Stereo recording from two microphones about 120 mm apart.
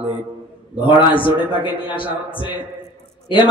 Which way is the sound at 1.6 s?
45° left (ahead or behind).